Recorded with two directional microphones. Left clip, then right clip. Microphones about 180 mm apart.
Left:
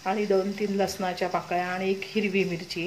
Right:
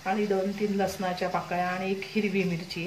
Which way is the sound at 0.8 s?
40° left (ahead or behind).